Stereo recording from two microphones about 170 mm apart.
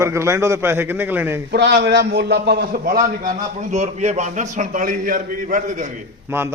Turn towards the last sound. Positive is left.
turn(degrees=-15)  # may be behind; listen again after turning